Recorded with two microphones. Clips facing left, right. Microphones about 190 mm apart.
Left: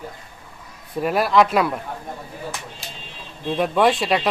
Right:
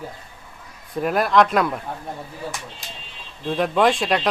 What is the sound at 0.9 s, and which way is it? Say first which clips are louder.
Speech: even; centre (ahead or behind).